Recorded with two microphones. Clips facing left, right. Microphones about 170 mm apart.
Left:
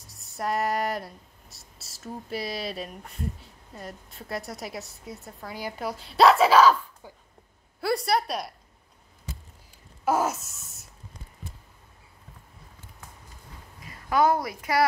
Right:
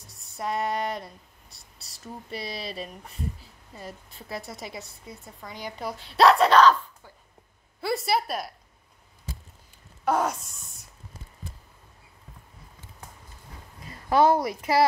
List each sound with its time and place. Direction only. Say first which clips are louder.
0.0 s a woman's voice: left 1 dB; centre (ahead or behind)
10.0 s speech: even; 5° left (ahead or behind)
13.8 s a woman's voice: right 2 dB; 30° right (ahead or behind)